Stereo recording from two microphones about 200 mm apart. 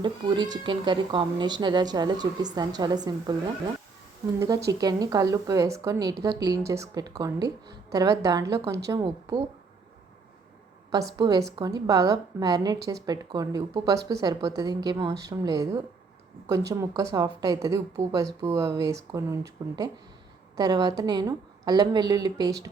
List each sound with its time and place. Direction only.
0.0 s speech: 20° right (ahead or behind)
11.2 s speech: 20° right (ahead or behind)